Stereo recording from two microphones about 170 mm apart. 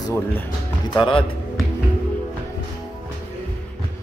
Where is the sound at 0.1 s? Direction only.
10° left (ahead or behind).